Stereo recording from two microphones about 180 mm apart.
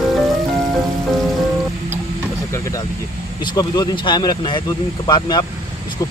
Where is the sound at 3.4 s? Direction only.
25° left (ahead or behind).